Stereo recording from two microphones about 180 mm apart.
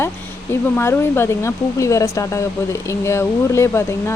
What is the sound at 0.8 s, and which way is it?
Speech, 15° left (ahead or behind).